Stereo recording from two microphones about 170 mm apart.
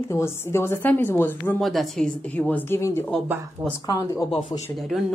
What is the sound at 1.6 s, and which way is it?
A woman's voice, centre (ahead or behind).